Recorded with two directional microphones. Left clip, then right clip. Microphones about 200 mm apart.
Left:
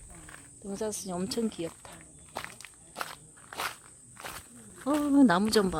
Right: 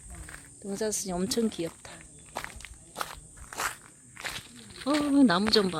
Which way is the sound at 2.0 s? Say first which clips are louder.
Right 2 dB; 5° right (ahead or behind).